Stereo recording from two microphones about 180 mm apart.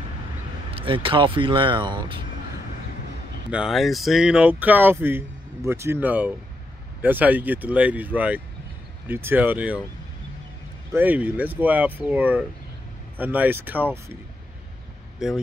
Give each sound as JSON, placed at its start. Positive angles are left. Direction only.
{"t": 0.7, "sound": "speech", "side_deg": -30}
{"t": 3.4, "sound": "speech", "side_deg": -5}
{"t": 11.0, "sound": "speech", "side_deg": -10}
{"t": 15.2, "sound": "speech", "side_deg": -5}